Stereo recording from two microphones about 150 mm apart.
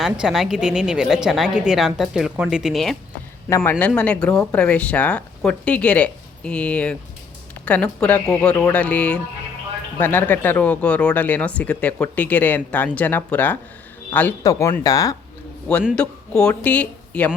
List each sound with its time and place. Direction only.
0.0 s a woman's voice: 5° right (ahead or behind)
3.5 s speech: 15° left (ahead or behind)
14.4 s speech: 25° left (ahead or behind)
16.0 s speech: 5° left (ahead or behind)